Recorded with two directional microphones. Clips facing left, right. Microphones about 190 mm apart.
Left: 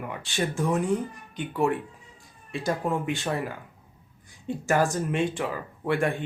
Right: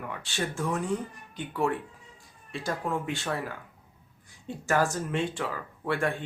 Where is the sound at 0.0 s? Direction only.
15° left (ahead or behind).